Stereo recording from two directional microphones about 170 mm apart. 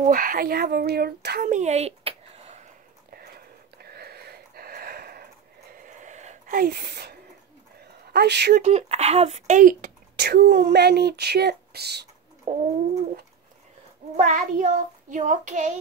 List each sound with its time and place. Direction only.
0.0 s speech: 55° right (ahead or behind)
1.5 s a sound: 40° right (ahead or behind)
3.1 s a sound: 65° right (ahead or behind)
8.1 s speech: 75° right (ahead or behind)
8.6 s speech: 40° right (ahead or behind)
10.1 s speech: 75° right (ahead or behind)
12.5 s bird: 45° right (ahead or behind)
14.1 s child singing: 50° right (ahead or behind)